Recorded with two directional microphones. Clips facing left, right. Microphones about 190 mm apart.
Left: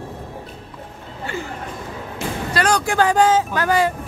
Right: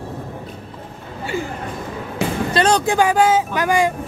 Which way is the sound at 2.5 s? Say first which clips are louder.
Right 2 dB; 25° right (ahead or behind).